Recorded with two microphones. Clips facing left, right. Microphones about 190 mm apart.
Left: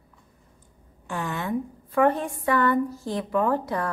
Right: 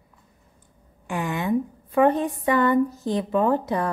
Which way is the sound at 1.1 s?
15° right (ahead or behind).